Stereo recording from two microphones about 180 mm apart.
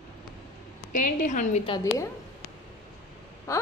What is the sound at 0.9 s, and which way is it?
Speech, 45° left (ahead or behind).